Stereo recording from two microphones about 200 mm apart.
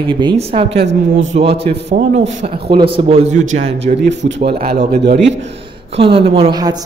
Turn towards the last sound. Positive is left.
turn(degrees=-20)  # may be behind; listen again after turning